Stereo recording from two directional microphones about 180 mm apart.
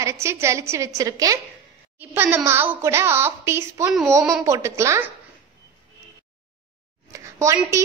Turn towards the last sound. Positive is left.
turn(degrees=-15)  # may be behind; listen again after turning